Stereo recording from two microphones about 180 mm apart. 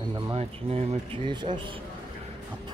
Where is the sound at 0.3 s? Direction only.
35° right (ahead or behind).